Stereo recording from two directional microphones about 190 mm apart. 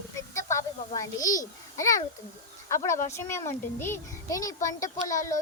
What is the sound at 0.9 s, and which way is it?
A child's voice, 20° left (ahead or behind).